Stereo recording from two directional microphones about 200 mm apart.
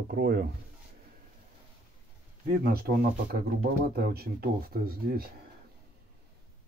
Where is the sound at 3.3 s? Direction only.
45° right (ahead or behind).